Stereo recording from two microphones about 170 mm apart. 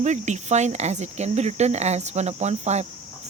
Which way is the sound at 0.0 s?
45° right (ahead or behind).